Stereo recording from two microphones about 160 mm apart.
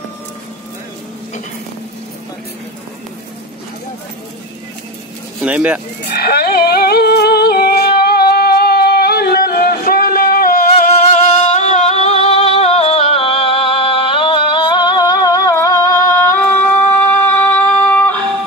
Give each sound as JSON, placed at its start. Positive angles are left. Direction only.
{"t": 5.4, "sound": "speech", "side_deg": -10}
{"t": 6.1, "sound": "music", "side_deg": 75}
{"t": 10.9, "sound": "music", "side_deg": 45}